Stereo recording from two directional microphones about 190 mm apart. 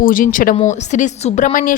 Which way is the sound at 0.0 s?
45° left (ahead or behind).